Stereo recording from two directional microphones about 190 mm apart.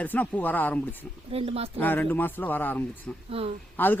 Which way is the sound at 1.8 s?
10° left (ahead or behind).